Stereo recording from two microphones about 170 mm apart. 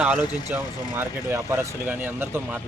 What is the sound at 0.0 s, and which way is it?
Speech, 5° right (ahead or behind).